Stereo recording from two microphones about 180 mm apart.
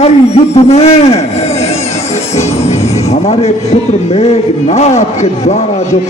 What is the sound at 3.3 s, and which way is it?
A man's voice, 35° left (ahead or behind).